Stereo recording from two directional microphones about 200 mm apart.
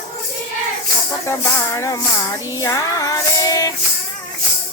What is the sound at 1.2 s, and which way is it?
Music, 15° left (ahead or behind).